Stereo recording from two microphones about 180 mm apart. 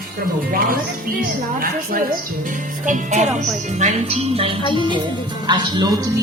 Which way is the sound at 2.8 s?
40° right (ahead or behind).